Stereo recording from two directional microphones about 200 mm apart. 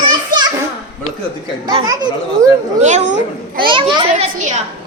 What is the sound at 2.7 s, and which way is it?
Speech, 35° right (ahead or behind).